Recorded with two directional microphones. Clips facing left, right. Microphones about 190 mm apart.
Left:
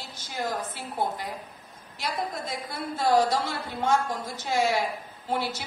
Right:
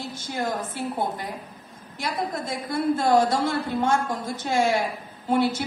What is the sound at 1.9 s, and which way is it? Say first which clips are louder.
A woman's voice: right 3 dB; 50° right (ahead or behind).